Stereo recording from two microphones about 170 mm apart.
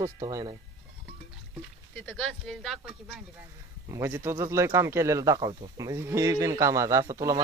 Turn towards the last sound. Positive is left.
turn(degrees=-20)  # may be behind; listen again after turning